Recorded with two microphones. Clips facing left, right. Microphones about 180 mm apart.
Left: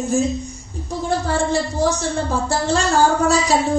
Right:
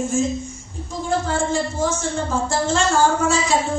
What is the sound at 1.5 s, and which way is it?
A woman's voice, 35° left (ahead or behind).